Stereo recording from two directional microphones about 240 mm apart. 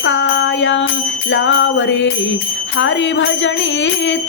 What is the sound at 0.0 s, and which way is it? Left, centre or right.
Music, left.